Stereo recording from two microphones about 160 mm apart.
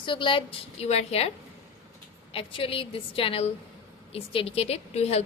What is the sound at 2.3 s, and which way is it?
A woman's voice, 35° left (ahead or behind).